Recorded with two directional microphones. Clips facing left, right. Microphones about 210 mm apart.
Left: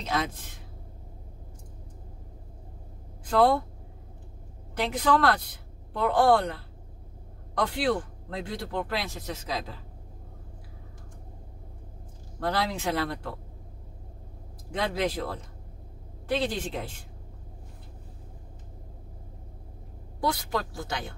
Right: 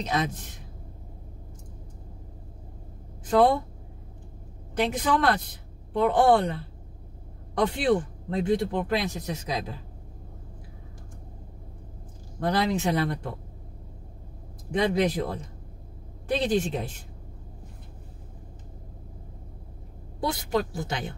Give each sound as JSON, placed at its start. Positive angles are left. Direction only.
{"t": 0.0, "sound": "speech", "side_deg": -20}
{"t": 3.3, "sound": "speech", "side_deg": -20}
{"t": 4.7, "sound": "speech", "side_deg": -20}
{"t": 7.6, "sound": "speech", "side_deg": -20}
{"t": 12.4, "sound": "speech", "side_deg": -20}
{"t": 14.7, "sound": "speech", "side_deg": -20}
{"t": 20.2, "sound": "speech", "side_deg": -20}